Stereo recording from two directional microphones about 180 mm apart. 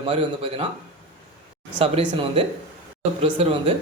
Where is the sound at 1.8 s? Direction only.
30° right (ahead or behind).